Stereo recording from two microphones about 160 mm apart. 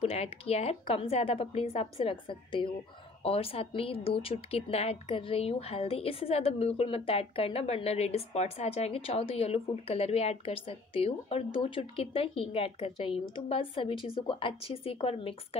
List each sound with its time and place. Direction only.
0.0 s speech: 40° left (ahead or behind)